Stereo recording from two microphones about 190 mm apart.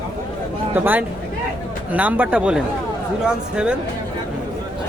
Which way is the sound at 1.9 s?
10° right (ahead or behind).